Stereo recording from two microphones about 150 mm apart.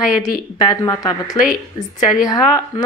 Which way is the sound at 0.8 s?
25° left (ahead or behind).